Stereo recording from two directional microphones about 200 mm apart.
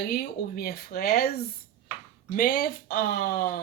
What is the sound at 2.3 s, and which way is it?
Speech, 45° left (ahead or behind).